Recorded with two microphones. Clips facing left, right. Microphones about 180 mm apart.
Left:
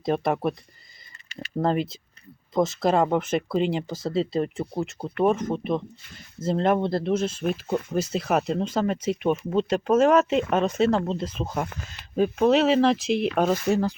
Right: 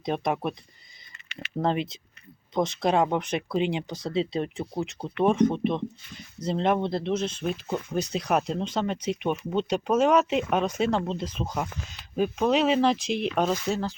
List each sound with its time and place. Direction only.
0.0 s speech: centre (ahead or behind)
1.3 s a sound: 40° left (ahead or behind)
1.5 s speech: centre (ahead or behind)